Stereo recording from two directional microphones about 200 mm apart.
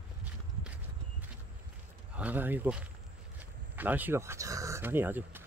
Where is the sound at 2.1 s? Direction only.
10° right (ahead or behind).